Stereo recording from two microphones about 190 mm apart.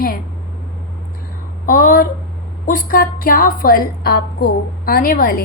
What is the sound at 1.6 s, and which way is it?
A woman's voice, 45° left (ahead or behind).